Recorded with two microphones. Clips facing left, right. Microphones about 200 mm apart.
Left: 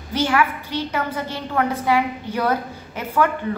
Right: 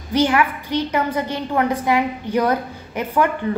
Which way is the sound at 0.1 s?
15° right (ahead or behind).